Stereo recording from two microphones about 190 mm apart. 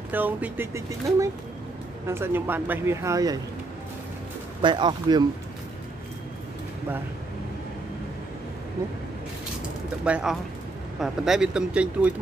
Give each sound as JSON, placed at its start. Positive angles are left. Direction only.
{"t": 0.1, "sound": "speech", "side_deg": -10}
{"t": 4.6, "sound": "speech", "side_deg": -25}
{"t": 10.0, "sound": "speech", "side_deg": -5}